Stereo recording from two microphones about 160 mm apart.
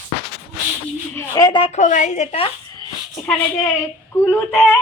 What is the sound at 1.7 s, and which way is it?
Speech, 50° left (ahead or behind).